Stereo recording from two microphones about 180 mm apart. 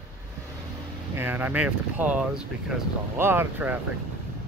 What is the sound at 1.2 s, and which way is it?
Speech, 10° right (ahead or behind).